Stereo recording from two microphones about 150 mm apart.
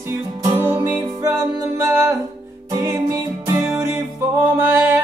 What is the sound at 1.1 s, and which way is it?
Music, 25° right (ahead or behind).